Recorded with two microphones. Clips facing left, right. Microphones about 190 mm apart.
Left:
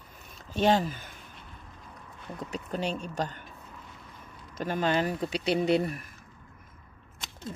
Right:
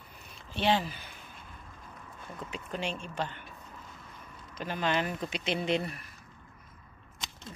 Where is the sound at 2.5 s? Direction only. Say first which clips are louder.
Left 4 dB; 40° left (ahead or behind).